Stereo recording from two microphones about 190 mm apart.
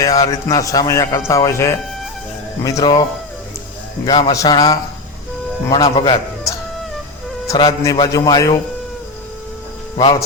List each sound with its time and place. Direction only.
0.0 s a man's voice: 20° left (ahead or behind)
4.0 s a man's voice: 25° left (ahead or behind)